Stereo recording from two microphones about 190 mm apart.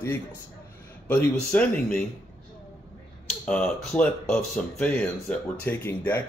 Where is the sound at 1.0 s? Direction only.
10° left (ahead or behind).